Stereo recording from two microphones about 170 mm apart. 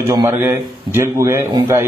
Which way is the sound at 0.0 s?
20° right (ahead or behind).